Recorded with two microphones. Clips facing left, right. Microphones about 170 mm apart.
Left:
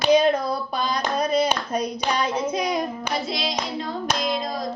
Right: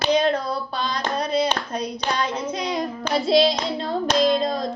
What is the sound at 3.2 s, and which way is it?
Hands, 30° right (ahead or behind).